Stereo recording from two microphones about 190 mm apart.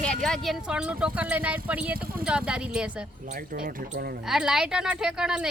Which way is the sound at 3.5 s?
55° right (ahead or behind).